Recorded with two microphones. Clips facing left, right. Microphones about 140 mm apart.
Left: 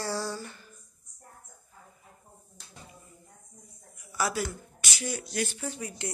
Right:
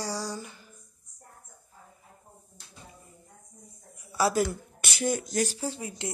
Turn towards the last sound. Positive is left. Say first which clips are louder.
# right 2 dB
turn(degrees=-25)  # may be behind; listen again after turning